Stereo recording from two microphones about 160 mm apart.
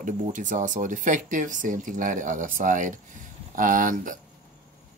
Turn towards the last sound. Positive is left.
turn(degrees=-60)  # may be behind; listen again after turning